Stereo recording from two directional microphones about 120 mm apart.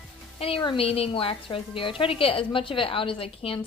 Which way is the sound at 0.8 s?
50° left (ahead or behind).